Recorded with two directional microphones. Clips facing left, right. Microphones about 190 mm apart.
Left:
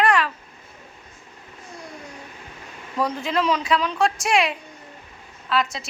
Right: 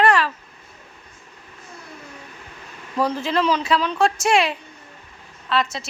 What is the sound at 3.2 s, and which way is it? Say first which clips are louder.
Speech: right 2 dB; centre (ahead or behind).